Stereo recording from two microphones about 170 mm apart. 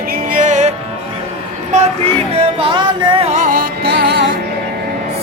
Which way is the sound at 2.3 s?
35° right (ahead or behind).